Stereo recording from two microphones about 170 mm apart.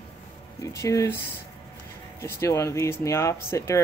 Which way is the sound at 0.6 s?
20° left (ahead or behind).